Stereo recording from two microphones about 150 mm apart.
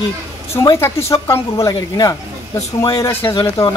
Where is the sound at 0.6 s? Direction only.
15° left (ahead or behind).